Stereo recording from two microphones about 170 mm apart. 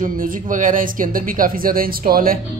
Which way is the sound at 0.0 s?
55° right (ahead or behind).